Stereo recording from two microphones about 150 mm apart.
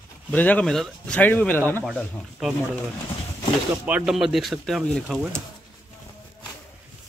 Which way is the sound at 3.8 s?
5° right (ahead or behind).